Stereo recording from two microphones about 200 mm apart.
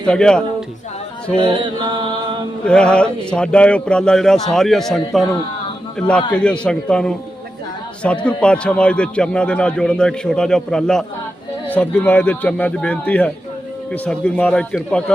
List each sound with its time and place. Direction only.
0.0 s a man's voice: 5° left (ahead or behind)
1.6 s mantra: 25° right (ahead or behind)
2.6 s a man's voice: 5° left (ahead or behind)